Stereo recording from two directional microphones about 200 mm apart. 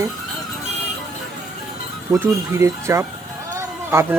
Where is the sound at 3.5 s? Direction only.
10° right (ahead or behind).